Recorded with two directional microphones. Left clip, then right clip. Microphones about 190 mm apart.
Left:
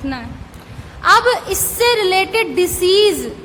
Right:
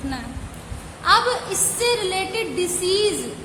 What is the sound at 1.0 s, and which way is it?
A woman's voice, 40° left (ahead or behind).